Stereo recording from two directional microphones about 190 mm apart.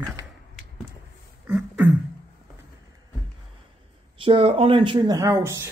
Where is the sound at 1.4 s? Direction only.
10° right (ahead or behind).